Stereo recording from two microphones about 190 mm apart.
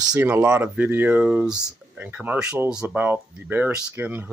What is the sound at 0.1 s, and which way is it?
Speech, 10° right (ahead or behind).